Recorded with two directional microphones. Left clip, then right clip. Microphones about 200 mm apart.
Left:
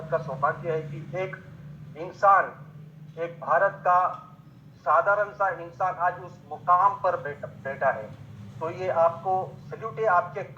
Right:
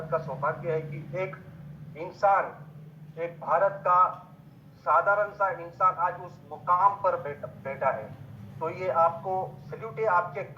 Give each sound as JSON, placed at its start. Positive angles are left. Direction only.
{"t": 0.1, "sound": "a man's voice", "side_deg": 15}